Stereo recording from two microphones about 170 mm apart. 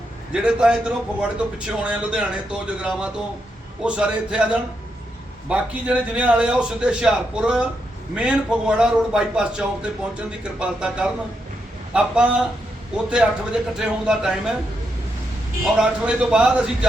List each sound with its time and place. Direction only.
0.3 s a man's voice: 5° right (ahead or behind)
15.6 s a man's voice: 5° right (ahead or behind)